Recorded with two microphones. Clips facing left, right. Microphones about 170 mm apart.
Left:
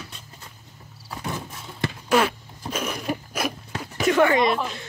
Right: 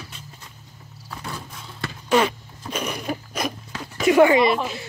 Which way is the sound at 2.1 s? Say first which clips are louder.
Right 2 dB; 5° left (ahead or behind).